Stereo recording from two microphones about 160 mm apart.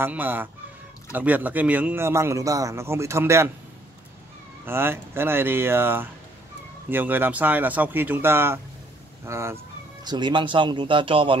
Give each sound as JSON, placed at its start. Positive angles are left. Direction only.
{"t": 0.0, "sound": "a man's voice", "side_deg": -10}
{"t": 4.6, "sound": "a man's voice", "side_deg": -15}
{"t": 10.0, "sound": "speech", "side_deg": -30}